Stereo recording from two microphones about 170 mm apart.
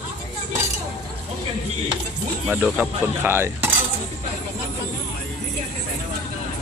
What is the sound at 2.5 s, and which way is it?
Speech, 10° right (ahead or behind).